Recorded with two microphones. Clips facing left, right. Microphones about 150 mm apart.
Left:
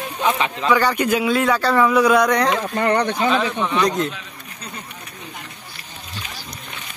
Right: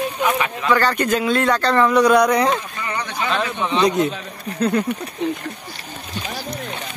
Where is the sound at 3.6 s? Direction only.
15° right (ahead or behind).